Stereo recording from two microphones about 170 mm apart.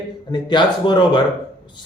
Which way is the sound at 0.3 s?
25° left (ahead or behind).